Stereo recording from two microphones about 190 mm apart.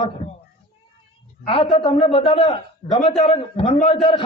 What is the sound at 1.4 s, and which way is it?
A man's voice, 30° left (ahead or behind).